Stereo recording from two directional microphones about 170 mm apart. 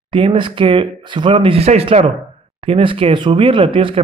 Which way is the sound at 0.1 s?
30° right (ahead or behind).